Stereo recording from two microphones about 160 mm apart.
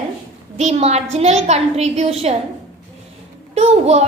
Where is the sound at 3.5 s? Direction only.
40° right (ahead or behind).